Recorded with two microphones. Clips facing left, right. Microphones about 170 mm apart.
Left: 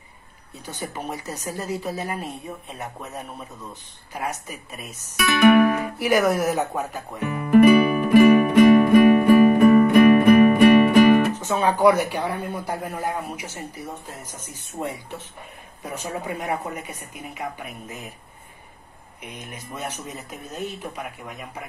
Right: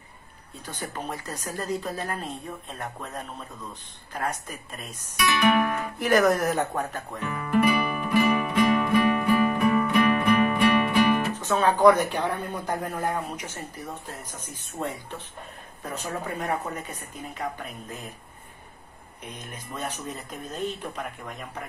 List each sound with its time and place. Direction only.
0.7 s speech: 10° left (ahead or behind)
5.4 s guitar: 60° left (ahead or behind)
5.9 s speech: 5° left (ahead or behind)
7.5 s music: 60° left (ahead or behind)
11.3 s speech: 10° left (ahead or behind)
19.3 s speech: 10° left (ahead or behind)